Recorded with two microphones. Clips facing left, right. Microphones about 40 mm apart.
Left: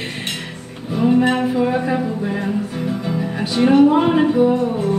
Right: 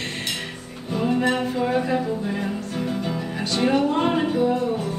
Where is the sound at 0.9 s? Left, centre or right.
Centre.